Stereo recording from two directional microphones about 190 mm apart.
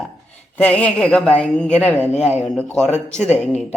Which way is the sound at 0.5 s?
10° left (ahead or behind).